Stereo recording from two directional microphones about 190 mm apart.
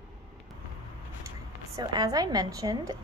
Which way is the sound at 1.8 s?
20° right (ahead or behind).